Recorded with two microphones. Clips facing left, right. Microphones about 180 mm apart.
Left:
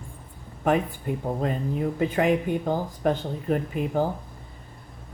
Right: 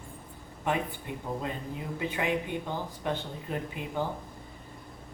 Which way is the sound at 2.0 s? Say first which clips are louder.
Left 7 dB; 45° left (ahead or behind).